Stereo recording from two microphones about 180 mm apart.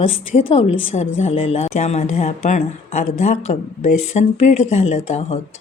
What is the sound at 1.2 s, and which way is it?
Speech, 35° left (ahead or behind).